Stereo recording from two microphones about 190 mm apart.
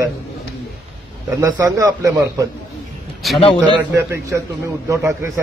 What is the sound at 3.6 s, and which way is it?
Speech, 15° right (ahead or behind).